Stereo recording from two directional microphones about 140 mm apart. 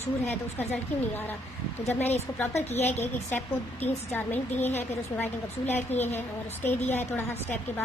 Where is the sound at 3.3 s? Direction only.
15° left (ahead or behind).